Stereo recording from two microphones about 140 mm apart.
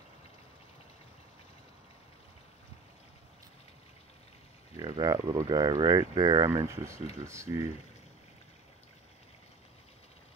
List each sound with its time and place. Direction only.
4.7 s speech: 25° right (ahead or behind)